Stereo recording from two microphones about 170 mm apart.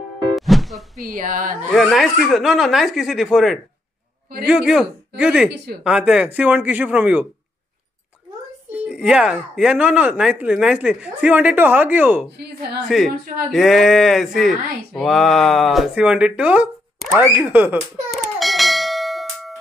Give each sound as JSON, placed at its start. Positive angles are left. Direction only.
{"t": 0.4, "sound": "music", "side_deg": 0}
{"t": 1.0, "sound": "speech", "side_deg": -55}
{"t": 1.8, "sound": "speech", "side_deg": 0}
{"t": 8.8, "sound": "speech", "side_deg": -5}
{"t": 17.7, "sound": "bell", "side_deg": 0}